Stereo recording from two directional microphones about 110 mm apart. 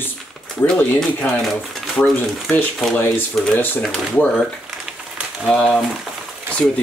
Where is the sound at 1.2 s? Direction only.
5° left (ahead or behind).